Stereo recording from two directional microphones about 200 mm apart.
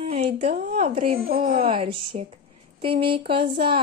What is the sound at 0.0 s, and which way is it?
Speech, 30° right (ahead or behind).